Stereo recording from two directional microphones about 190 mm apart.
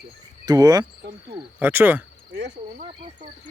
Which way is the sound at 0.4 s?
20° right (ahead or behind).